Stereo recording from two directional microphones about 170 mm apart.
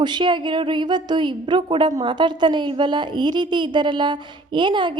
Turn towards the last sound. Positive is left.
turn(degrees=-30)  # may be behind; listen again after turning